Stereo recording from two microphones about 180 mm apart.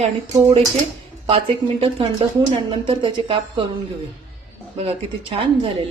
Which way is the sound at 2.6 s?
30° right (ahead or behind).